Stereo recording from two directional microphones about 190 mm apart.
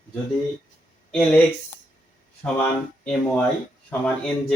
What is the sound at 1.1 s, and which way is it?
Speech, 5° left (ahead or behind).